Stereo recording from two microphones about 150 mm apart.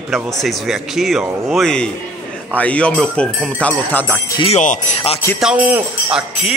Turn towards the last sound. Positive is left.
turn(degrees=-5)  # may be behind; listen again after turning